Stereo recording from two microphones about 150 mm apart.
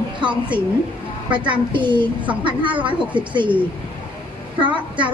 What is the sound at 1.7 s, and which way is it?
Speech, 30° right (ahead or behind).